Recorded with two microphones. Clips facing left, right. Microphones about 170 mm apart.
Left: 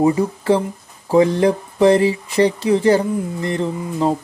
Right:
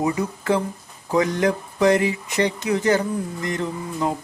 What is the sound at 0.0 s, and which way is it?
Speech, 30° left (ahead or behind).